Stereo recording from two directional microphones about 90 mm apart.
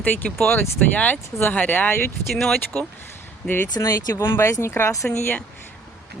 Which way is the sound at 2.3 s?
5° left (ahead or behind).